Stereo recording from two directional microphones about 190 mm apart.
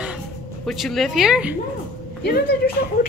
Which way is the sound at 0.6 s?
Centre (ahead or behind).